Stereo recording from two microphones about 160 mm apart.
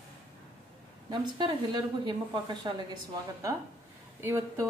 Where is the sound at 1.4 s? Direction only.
30° right (ahead or behind).